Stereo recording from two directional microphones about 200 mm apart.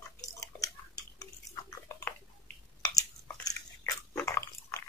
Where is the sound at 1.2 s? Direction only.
15° left (ahead or behind).